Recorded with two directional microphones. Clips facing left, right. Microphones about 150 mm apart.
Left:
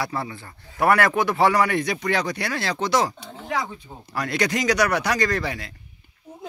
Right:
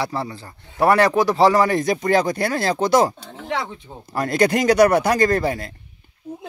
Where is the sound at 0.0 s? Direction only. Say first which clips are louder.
Right 3 dB; 30° right (ahead or behind); by 5.8 s 45° right (ahead or behind).